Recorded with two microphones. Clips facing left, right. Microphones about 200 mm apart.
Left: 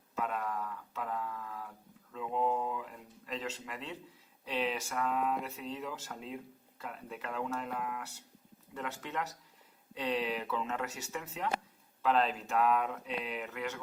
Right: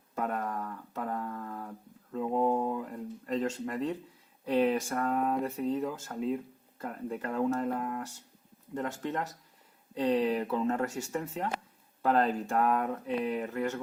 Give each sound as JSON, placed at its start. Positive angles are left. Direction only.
{"t": 0.2, "sound": "a sound", "side_deg": -50}
{"t": 4.4, "sound": "speech", "side_deg": -50}
{"t": 7.3, "sound": "speech", "side_deg": -35}